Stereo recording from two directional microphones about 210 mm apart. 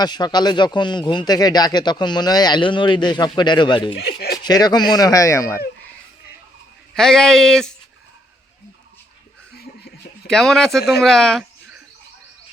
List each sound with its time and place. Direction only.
0.0 s speech: 20° left (ahead or behind)
3.9 s speech: 50° left (ahead or behind)
4.4 s speech: 20° left (ahead or behind)
6.9 s speech: centre (ahead or behind)
10.2 s speech: centre (ahead or behind)